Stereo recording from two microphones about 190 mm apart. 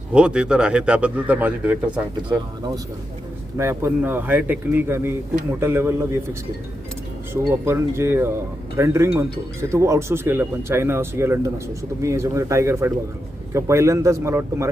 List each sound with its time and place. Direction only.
0.1 s speech: 5° right (ahead or behind)
2.3 s speech: 20° right (ahead or behind)
7.6 s speech: 15° right (ahead or behind)